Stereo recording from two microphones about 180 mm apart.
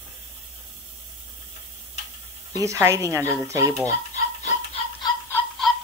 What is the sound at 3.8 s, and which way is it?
Chicken, 40° left (ahead or behind).